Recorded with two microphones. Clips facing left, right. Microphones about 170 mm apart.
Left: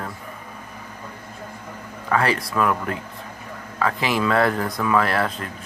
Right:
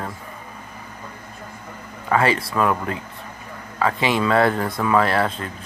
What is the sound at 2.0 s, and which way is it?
Speech, centre (ahead or behind).